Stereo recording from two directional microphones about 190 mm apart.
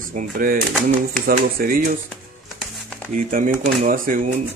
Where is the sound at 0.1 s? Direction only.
45° right (ahead or behind).